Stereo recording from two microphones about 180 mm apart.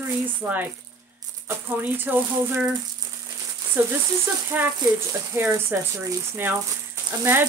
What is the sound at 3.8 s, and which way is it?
Speech, 10° right (ahead or behind).